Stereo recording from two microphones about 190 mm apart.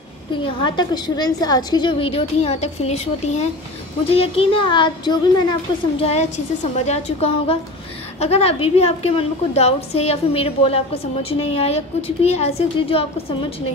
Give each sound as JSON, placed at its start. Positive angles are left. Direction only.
{"t": 0.3, "sound": "a woman's voice", "side_deg": 25}